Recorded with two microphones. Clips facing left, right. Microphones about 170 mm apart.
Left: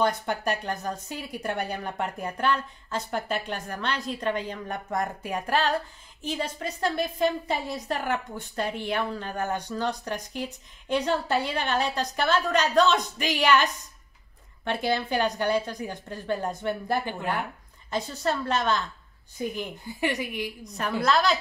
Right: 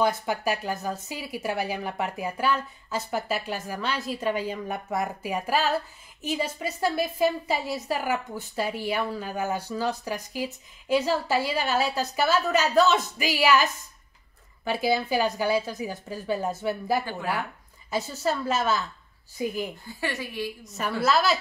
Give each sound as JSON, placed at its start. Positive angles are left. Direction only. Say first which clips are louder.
{"t": 0.0, "sound": "a woman's voice", "louder": "right 1 dB", "side_deg": -5}
{"t": 19.8, "sound": "speech", "louder": "left 4 dB", "side_deg": 15}
{"t": 20.6, "sound": "a woman's voice", "louder": "even", "side_deg": -5}